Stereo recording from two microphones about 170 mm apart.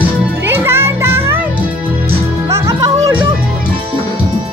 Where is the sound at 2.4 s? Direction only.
20° right (ahead or behind).